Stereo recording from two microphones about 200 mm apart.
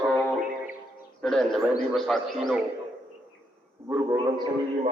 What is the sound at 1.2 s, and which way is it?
A man's voice, centre (ahead or behind).